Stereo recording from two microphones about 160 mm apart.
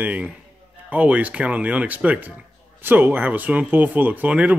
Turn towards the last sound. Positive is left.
turn(degrees=-10)  # may be behind; listen again after turning